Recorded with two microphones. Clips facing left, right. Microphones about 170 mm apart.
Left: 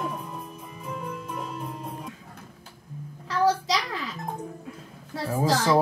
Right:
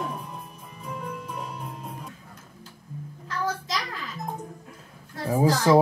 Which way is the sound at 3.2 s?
90° left.